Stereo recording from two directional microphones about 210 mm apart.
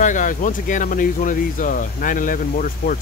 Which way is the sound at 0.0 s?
35° left (ahead or behind).